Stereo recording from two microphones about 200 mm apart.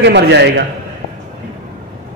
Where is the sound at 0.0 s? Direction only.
60° right (ahead or behind).